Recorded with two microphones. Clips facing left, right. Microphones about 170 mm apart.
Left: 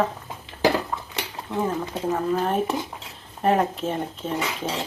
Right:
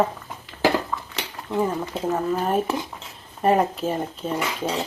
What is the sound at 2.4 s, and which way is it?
Speech, centre (ahead or behind).